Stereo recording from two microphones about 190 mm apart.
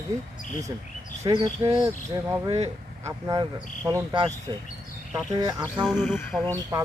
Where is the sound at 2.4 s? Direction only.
35° right (ahead or behind).